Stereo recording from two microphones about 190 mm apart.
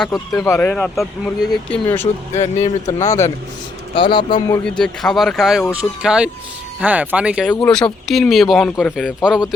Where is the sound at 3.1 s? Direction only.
15° left (ahead or behind).